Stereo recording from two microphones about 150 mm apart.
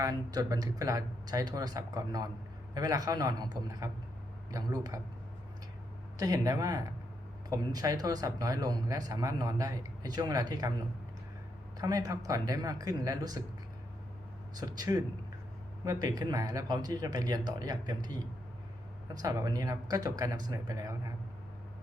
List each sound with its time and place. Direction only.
0.0 s a man's voice: 25° right (ahead or behind)
6.1 s a man's voice: 25° right (ahead or behind)
11.8 s a man's voice: 25° right (ahead or behind)
14.5 s a man's voice: 25° right (ahead or behind)